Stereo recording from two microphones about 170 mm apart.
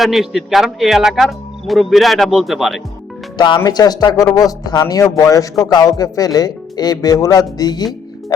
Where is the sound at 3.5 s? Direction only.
20° left (ahead or behind).